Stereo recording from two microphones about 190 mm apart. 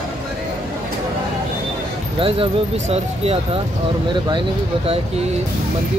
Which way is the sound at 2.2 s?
30° right (ahead or behind).